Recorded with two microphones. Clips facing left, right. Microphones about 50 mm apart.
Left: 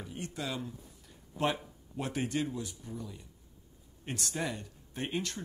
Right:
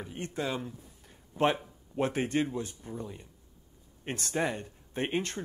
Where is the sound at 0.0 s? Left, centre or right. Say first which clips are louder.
Right 4 dB; right.